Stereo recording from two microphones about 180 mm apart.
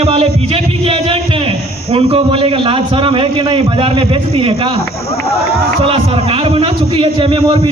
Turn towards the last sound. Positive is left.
turn(degrees=-30)  # may be behind; listen again after turning